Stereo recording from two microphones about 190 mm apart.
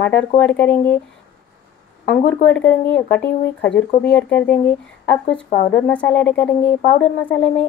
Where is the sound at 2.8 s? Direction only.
5° left (ahead or behind).